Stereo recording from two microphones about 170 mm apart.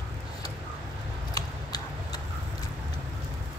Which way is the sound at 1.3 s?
20° left (ahead or behind).